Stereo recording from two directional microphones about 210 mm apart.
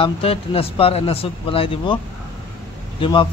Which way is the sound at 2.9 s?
25° left (ahead or behind).